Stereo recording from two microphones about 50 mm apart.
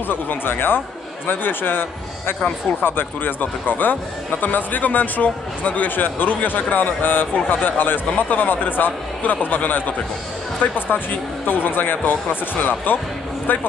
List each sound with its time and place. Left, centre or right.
0.1 s a man's voice: left
7.3 s speech: left
7.6 s speech: left